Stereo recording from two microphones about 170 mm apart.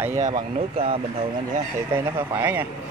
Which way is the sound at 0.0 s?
15° right (ahead or behind).